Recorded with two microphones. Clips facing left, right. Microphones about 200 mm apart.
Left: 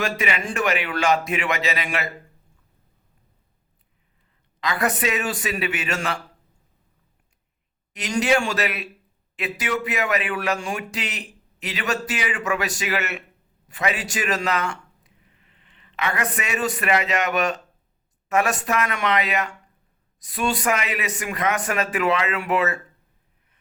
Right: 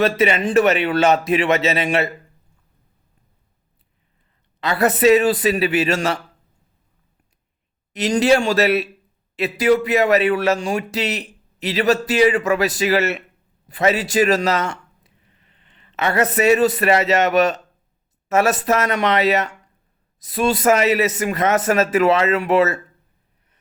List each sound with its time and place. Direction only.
0.0 s speech: 30° right (ahead or behind)
4.6 s speech: 35° right (ahead or behind)
7.9 s a man's voice: 35° right (ahead or behind)